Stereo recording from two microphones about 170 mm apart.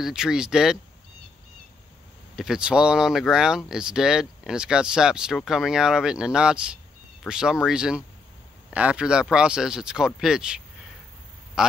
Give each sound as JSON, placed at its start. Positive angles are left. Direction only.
{"t": 0.0, "sound": "speech", "side_deg": -5}
{"t": 2.3, "sound": "speech", "side_deg": -5}